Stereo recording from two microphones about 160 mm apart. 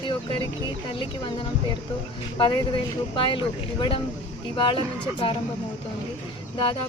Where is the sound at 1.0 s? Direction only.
30° left (ahead or behind).